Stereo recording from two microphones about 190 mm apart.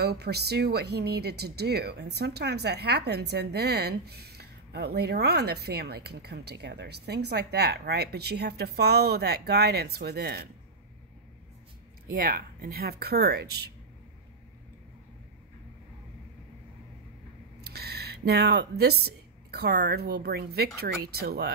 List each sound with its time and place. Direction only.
0.0 s speech: 60° right (ahead or behind)
12.1 s speech: 50° right (ahead or behind)
17.6 s speech: 55° right (ahead or behind)